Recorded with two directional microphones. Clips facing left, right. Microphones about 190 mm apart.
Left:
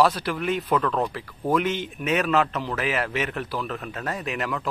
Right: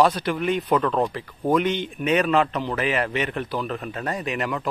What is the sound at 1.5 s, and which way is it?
A man's voice, 5° left (ahead or behind).